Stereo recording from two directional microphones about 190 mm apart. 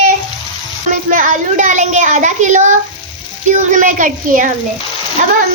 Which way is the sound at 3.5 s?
40° right (ahead or behind).